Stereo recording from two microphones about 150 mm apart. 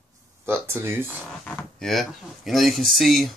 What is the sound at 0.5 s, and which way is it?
Speech, 15° right (ahead or behind).